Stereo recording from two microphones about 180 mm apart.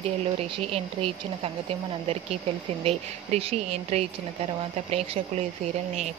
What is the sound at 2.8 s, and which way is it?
Speech, 35° right (ahead or behind).